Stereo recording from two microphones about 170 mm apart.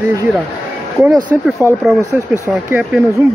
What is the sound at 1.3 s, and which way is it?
Speech, 10° right (ahead or behind).